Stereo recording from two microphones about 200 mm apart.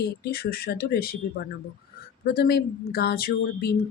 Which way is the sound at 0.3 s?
50° left (ahead or behind).